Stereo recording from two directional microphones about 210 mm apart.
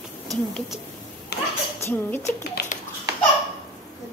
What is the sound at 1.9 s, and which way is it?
Speech, 10° left (ahead or behind).